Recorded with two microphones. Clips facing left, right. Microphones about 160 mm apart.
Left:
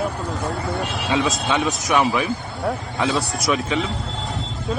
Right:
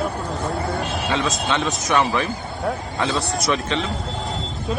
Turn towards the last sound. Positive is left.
turn(degrees=5)  # may be behind; listen again after turning